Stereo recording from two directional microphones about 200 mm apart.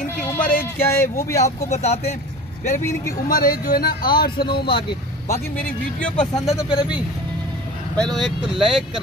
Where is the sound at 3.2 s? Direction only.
45° left (ahead or behind).